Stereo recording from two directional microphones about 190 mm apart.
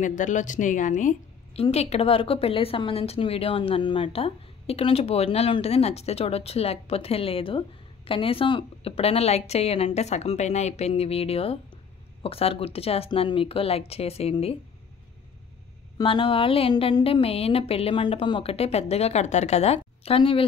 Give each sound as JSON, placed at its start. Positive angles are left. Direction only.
{"t": 0.0, "sound": "a woman's voice", "side_deg": 40}
{"t": 16.0, "sound": "a woman's voice", "side_deg": 25}